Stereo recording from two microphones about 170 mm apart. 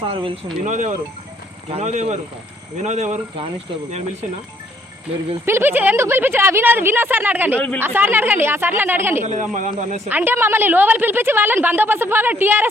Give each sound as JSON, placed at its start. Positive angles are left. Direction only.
{"t": 0.0, "sound": "speech", "side_deg": -30}
{"t": 0.6, "sound": "speech", "side_deg": -45}
{"t": 5.5, "sound": "a woman's voice", "side_deg": -15}
{"t": 9.2, "sound": "speech", "side_deg": -45}
{"t": 10.1, "sound": "a woman's voice", "side_deg": -10}